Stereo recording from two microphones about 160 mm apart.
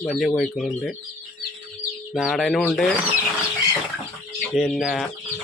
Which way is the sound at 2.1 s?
Centre (ahead or behind).